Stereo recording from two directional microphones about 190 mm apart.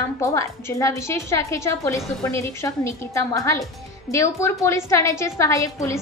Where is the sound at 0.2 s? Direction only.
15° left (ahead or behind).